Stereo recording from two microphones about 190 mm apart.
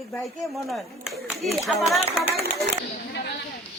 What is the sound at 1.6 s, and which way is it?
Speech, centre (ahead or behind).